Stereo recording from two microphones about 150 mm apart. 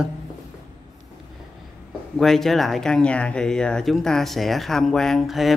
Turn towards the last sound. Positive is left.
turn(degrees=0)  # may be behind; listen again after turning